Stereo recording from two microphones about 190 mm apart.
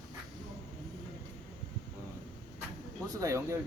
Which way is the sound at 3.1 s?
15° right (ahead or behind).